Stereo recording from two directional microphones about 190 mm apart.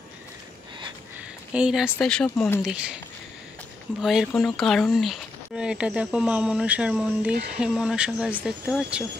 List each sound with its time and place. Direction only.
1.5 s speech: 5° right (ahead or behind)
2.6 s speech: 5° right (ahead or behind)
4.0 s speech: centre (ahead or behind)